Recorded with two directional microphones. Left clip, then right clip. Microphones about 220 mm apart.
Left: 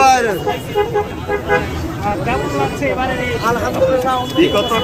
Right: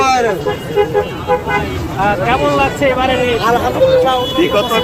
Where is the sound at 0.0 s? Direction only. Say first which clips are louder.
Left 1 dB; 20° left (ahead or behind).